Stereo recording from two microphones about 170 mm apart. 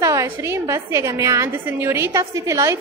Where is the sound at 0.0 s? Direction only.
20° right (ahead or behind).